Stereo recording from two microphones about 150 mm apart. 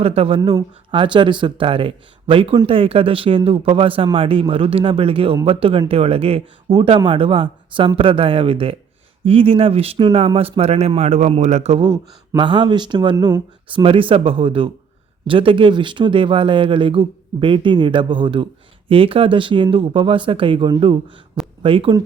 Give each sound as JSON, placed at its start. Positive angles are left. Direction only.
{"t": 0.0, "sound": "speech", "side_deg": -40}
{"t": 12.4, "sound": "speech", "side_deg": -30}